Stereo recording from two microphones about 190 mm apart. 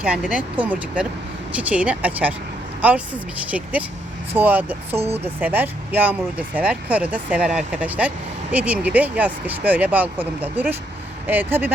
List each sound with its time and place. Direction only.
0.0 s speech: 5° right (ahead or behind)
4.9 s speech: 30° right (ahead or behind)
5.2 s speech: 10° right (ahead or behind)